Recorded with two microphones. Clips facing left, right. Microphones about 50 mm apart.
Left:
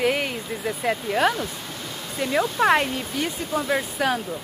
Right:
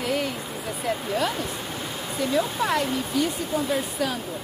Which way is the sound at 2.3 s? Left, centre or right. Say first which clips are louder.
Left 5 dB; left.